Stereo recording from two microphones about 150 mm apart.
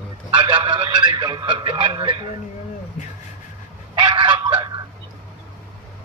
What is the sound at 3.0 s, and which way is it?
Speech, 50° left (ahead or behind).